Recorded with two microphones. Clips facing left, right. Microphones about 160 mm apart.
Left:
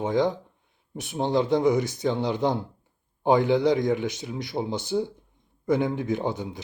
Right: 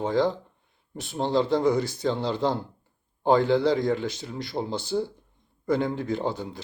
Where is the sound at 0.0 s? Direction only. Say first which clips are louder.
Even; 20° left (ahead or behind).